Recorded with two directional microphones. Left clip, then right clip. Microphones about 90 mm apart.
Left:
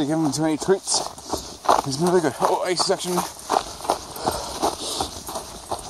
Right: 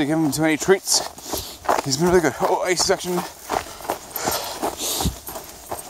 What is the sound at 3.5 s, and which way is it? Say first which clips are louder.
Walk: left 4 dB; 5° left (ahead or behind).